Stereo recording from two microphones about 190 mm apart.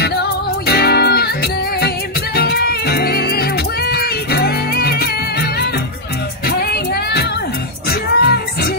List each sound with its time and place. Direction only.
0.0 s music: 60° left (ahead or behind)